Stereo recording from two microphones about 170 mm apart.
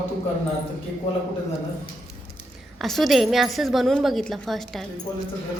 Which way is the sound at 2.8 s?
Centre (ahead or behind).